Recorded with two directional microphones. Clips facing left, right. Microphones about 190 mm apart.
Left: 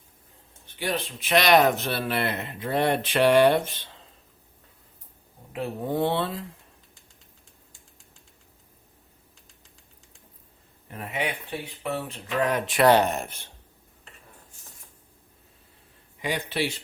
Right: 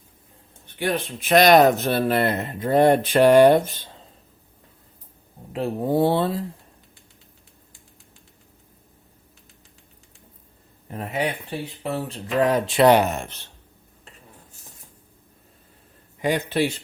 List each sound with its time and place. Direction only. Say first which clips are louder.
0.8 s speech: right 4 dB; 50° right (ahead or behind)
5.5 s speech: right 6 dB; 35° right (ahead or behind)
10.9 s speech: right 5 dB; 35° right (ahead or behind)
13.0 s speech: right 2 dB; centre (ahead or behind)
16.2 s speech: right 6 dB; 45° right (ahead or behind)